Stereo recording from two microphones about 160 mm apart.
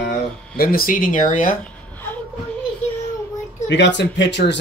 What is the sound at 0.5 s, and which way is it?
Speech, 70° left (ahead or behind).